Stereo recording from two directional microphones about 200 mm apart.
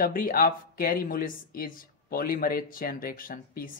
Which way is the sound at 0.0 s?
45° left (ahead or behind).